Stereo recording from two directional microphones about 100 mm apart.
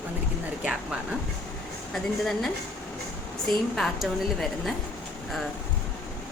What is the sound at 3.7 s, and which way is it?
Speech, 5° left (ahead or behind).